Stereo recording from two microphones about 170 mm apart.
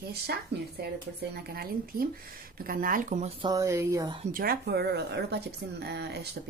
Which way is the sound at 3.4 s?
20° right (ahead or behind).